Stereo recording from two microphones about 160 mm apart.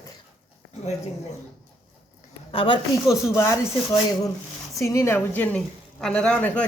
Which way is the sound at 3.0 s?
20° left (ahead or behind).